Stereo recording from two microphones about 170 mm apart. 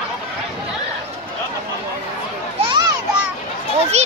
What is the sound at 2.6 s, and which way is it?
Children playing, 25° right (ahead or behind).